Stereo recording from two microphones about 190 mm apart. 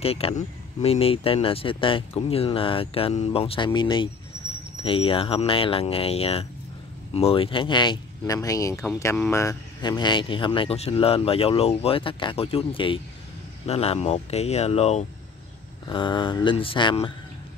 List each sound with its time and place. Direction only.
0.0 s speech: 30° left (ahead or behind)